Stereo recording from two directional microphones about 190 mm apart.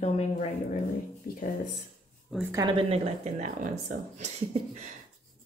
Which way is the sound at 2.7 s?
30° right (ahead or behind).